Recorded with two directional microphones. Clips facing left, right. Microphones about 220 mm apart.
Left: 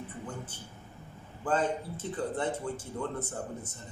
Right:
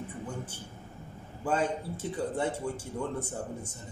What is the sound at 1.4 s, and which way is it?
A man's voice, 10° right (ahead or behind).